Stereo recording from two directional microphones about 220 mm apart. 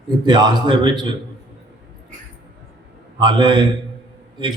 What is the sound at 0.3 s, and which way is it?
Speech, 20° right (ahead or behind).